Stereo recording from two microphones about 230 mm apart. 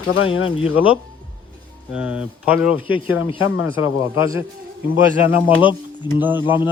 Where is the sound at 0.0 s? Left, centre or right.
Left.